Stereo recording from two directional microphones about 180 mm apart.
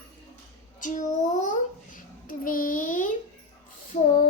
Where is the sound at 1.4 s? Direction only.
45° left (ahead or behind).